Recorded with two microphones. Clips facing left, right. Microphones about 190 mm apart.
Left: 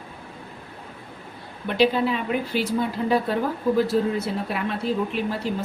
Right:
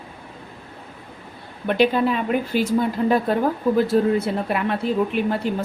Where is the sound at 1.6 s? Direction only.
50° right (ahead or behind).